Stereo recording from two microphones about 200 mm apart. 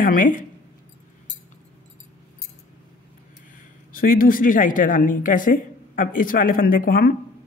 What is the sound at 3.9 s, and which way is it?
Speech, 45° left (ahead or behind).